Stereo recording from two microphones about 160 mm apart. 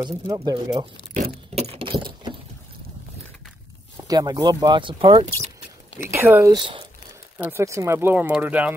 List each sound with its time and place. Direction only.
0.1 s speech: 25° right (ahead or behind)
1.5 s keys jangling: 40° right (ahead or behind)
4.1 s speech: 25° right (ahead or behind)
5.9 s speech: 15° right (ahead or behind)
6.5 s speech: 30° right (ahead or behind)
7.4 s speech: 15° right (ahead or behind)